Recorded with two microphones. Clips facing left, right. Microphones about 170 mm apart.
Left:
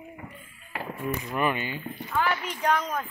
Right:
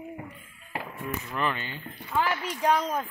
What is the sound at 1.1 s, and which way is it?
Speech, 15° left (ahead or behind).